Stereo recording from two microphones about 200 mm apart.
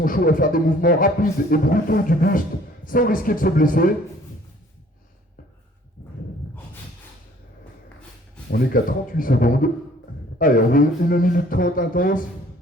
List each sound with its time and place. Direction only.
0.0 s a man's voice: 45° left (ahead or behind)
8.4 s a man's voice: 45° left (ahead or behind)